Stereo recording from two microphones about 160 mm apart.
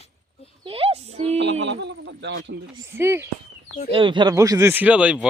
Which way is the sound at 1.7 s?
90° right.